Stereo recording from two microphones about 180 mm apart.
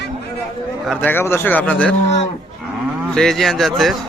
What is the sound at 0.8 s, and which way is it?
A man's voice, 10° left (ahead or behind).